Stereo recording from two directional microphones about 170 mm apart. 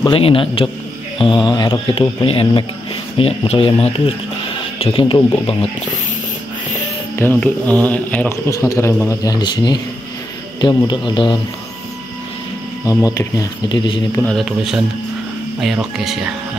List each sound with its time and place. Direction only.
0.0 s speech: 30° left (ahead or behind)
7.2 s a man's voice: 10° left (ahead or behind); by 11.3 s 25° left (ahead or behind)
12.8 s speech: 20° left (ahead or behind)
14.1 s a man's voice: 5° left (ahead or behind)